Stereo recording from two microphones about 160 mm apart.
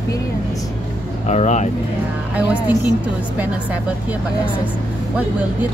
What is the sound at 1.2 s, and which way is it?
Speech, 45° left (ahead or behind).